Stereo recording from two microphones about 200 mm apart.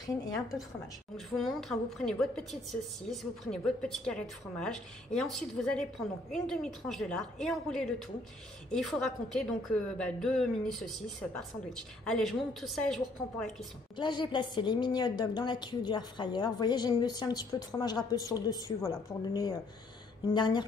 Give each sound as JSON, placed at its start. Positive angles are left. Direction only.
{"t": 1.1, "sound": "a woman's voice", "side_deg": 0}
{"t": 13.9, "sound": "a woman's voice", "side_deg": 25}